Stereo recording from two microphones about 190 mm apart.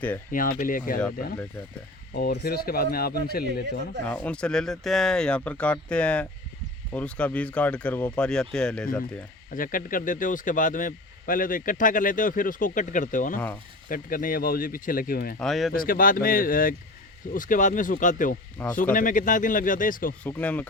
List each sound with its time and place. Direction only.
0.3 s speech: 45° left (ahead or behind)
2.1 s speech: 55° left (ahead or behind)
4.0 s speech: 5° left (ahead or behind)
9.5 s speech: 45° left (ahead or behind)
15.4 s speech: centre (ahead or behind)
15.7 s speech: 50° left (ahead or behind)
20.2 s speech: 5° left (ahead or behind)